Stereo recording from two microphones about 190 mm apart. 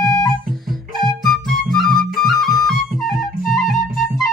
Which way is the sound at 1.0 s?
Centre (ahead or behind).